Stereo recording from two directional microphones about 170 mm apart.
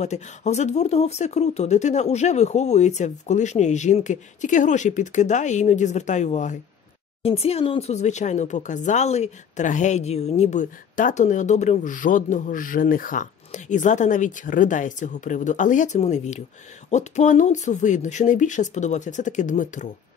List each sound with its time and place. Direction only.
0.0 s speech: 40° left (ahead or behind)